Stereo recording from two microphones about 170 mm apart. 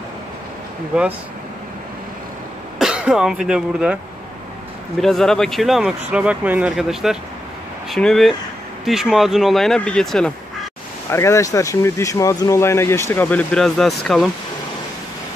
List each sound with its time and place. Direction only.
0.9 s speech: 5° right (ahead or behind)
2.8 s speech: 5° right (ahead or behind)
5.0 s speech: centre (ahead or behind)
11.1 s speech: 15° left (ahead or behind); by 14.3 s centre (ahead or behind)